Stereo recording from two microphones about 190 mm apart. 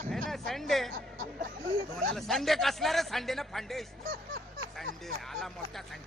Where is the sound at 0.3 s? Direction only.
Centre (ahead or behind).